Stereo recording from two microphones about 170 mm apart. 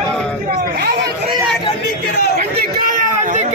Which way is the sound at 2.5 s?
60° right (ahead or behind).